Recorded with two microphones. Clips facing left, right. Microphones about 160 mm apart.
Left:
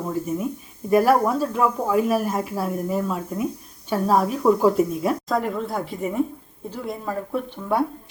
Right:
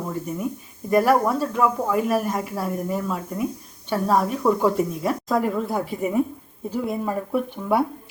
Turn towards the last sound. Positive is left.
turn(degrees=-10)  # may be behind; listen again after turning